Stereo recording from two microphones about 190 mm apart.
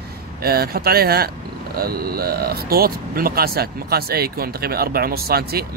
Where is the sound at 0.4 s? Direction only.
55° right (ahead or behind).